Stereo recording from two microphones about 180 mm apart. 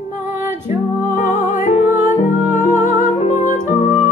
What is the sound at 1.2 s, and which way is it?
Music, 45° left (ahead or behind).